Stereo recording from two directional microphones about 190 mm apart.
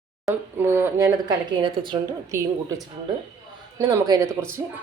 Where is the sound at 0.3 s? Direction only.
15° right (ahead or behind).